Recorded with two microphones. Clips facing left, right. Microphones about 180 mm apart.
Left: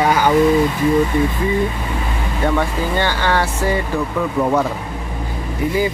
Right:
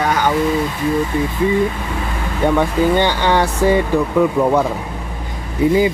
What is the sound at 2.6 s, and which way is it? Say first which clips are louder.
Speech: right 5 dB; 20° right (ahead or behind).